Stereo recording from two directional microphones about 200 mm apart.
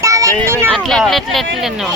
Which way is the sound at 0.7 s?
5° left (ahead or behind).